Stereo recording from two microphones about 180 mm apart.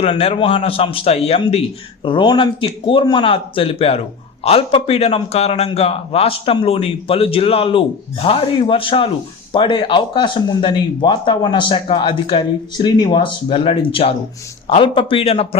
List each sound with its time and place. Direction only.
0.0 s a man's voice: 35° left (ahead or behind)